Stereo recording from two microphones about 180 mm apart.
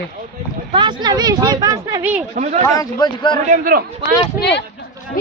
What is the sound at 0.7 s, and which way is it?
Speech, 25° right (ahead or behind).